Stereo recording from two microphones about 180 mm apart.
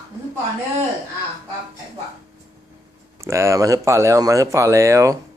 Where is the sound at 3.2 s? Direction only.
15° right (ahead or behind).